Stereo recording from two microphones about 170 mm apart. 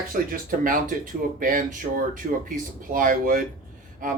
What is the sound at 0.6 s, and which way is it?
Speech, 50° right (ahead or behind).